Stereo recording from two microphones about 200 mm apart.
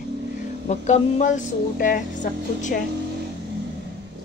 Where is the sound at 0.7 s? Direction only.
35° left (ahead or behind).